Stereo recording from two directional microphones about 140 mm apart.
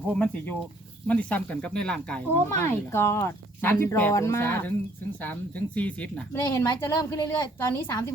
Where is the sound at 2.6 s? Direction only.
15° left (ahead or behind).